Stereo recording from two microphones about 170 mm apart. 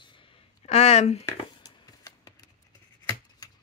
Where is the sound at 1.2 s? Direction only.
20° left (ahead or behind).